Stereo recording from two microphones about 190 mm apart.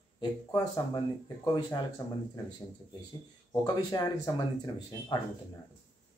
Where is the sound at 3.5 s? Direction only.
20° left (ahead or behind).